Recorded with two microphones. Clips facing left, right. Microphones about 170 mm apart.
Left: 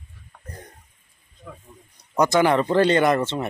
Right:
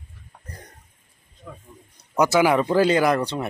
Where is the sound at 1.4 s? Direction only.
Centre (ahead or behind).